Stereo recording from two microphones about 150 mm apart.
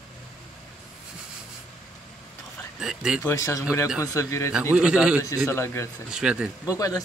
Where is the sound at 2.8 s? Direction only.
5° right (ahead or behind).